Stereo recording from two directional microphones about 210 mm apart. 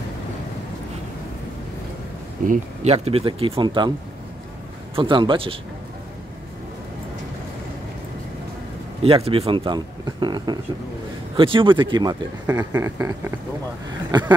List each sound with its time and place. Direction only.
2.4 s speech: 35° right (ahead or behind)
4.9 s speech: 25° right (ahead or behind)
9.0 s speech: 25° right (ahead or behind)